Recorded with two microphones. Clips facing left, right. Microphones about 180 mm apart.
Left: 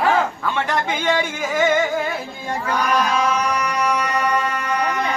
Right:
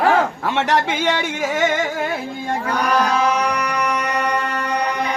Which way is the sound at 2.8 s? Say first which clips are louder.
Right 2 dB; 65° right (ahead or behind).